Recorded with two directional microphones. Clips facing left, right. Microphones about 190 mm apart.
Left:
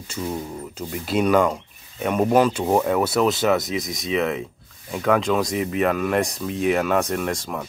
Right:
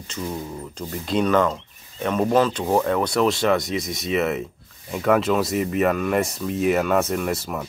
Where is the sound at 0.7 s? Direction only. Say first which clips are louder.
Even; 10° left (ahead or behind).